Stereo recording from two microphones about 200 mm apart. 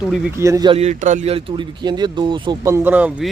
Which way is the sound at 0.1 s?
10° right (ahead or behind).